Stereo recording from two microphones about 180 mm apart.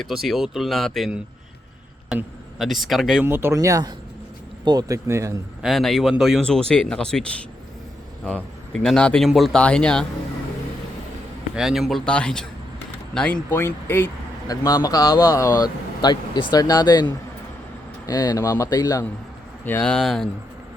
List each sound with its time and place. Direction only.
0.0 s speech: centre (ahead or behind)
3.2 s speech: 15° right (ahead or behind)
5.6 s speech: centre (ahead or behind)
8.7 s speech: 5° left (ahead or behind)
11.5 s speech: centre (ahead or behind); by 19.1 s 20° left (ahead or behind)
19.6 s speech: 5° left (ahead or behind)